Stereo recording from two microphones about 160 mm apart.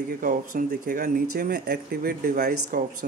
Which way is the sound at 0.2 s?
60° right (ahead or behind).